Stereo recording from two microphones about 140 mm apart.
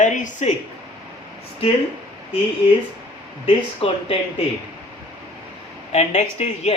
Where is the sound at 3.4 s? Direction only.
45° left (ahead or behind).